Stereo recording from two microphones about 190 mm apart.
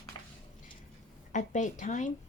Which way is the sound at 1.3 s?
40° left (ahead or behind).